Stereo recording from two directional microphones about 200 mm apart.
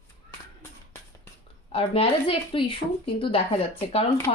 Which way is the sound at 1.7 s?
30° left (ahead or behind).